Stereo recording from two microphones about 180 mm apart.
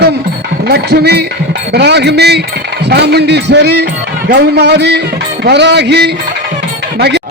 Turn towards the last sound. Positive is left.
turn(degrees=-70)  # may be behind; listen again after turning